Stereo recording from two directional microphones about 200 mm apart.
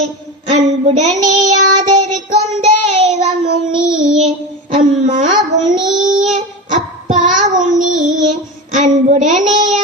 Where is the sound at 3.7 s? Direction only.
5° right (ahead or behind).